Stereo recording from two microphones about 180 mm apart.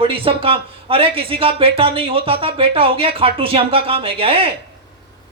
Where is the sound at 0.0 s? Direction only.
30° right (ahead or behind).